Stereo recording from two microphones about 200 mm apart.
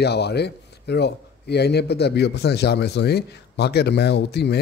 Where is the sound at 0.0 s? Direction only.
55° left (ahead or behind).